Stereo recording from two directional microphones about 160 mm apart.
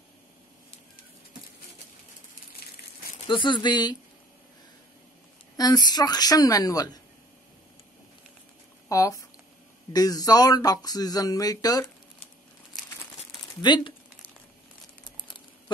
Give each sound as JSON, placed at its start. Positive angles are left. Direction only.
{"t": 3.3, "sound": "speech", "side_deg": 30}
{"t": 5.6, "sound": "speech", "side_deg": 25}
{"t": 8.8, "sound": "speech", "side_deg": 20}
{"t": 13.6, "sound": "speech", "side_deg": 25}